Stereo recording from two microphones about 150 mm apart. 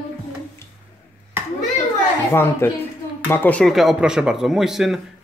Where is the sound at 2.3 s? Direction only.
15° left (ahead or behind).